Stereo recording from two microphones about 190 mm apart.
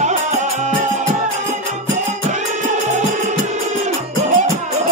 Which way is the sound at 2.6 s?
40° right (ahead or behind).